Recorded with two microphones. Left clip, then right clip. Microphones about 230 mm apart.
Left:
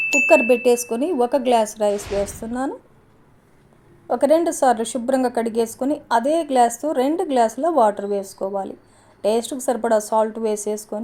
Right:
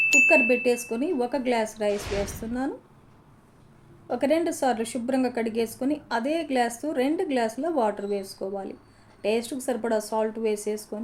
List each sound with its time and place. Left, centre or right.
0.0 s chime: centre
0.3 s speech: left
1.9 s a woman's voice: centre
4.1 s a woman's voice: left